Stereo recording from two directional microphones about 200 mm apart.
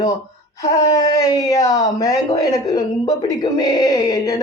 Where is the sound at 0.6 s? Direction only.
15° left (ahead or behind).